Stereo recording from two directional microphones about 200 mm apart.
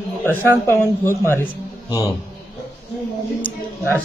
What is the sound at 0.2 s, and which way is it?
Speech, 10° left (ahead or behind).